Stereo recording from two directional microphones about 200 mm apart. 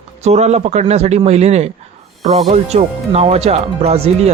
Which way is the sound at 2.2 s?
20° right (ahead or behind).